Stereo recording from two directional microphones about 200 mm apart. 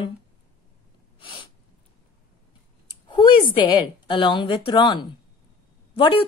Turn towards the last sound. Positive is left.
turn(degrees=25)  # may be behind; listen again after turning